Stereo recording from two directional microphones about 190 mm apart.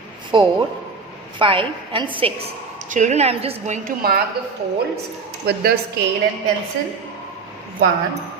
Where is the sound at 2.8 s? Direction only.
40° right (ahead or behind).